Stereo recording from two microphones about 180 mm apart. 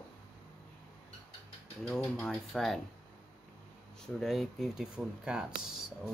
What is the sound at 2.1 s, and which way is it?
Speech, centre (ahead or behind).